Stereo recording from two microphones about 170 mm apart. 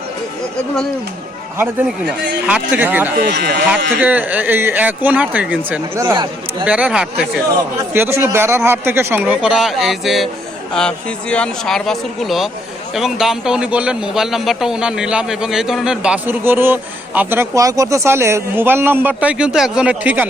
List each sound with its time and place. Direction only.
1.5 s a man's voice: 10° right (ahead or behind)
3.2 s speech: 75° right (ahead or behind)
4.0 s a man's voice: 10° right (ahead or behind)